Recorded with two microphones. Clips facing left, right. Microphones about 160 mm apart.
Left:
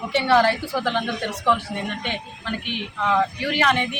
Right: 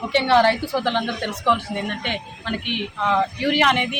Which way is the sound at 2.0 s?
15° right (ahead or behind).